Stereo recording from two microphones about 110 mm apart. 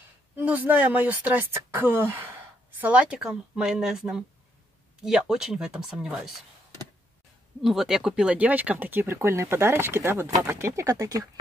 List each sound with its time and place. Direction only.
0.4 s speech: 15° right (ahead or behind)
7.6 s speech: centre (ahead or behind); by 11.2 s 30° right (ahead or behind)